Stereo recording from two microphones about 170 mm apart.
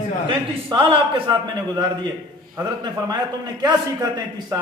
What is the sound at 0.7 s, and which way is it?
A man's voice, 30° right (ahead or behind).